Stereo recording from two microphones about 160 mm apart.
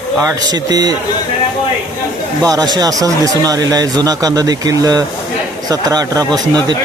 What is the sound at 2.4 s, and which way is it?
Speech, 25° right (ahead or behind).